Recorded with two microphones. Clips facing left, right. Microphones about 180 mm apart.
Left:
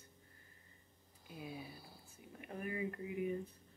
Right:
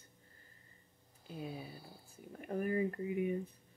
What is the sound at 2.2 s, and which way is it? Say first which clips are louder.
Speech: right 8 dB; 45° right (ahead or behind).